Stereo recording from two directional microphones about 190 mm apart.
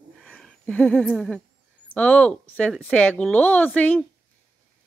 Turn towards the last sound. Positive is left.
turn(degrees=5)  # may be behind; listen again after turning